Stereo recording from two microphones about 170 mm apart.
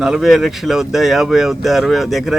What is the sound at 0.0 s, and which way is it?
Speech, centre (ahead or behind).